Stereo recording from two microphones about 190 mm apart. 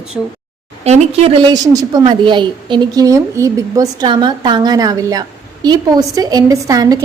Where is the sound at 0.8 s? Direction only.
35° right (ahead or behind).